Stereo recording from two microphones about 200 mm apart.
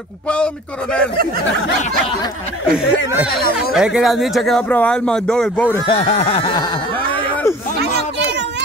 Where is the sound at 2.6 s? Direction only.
5° right (ahead or behind).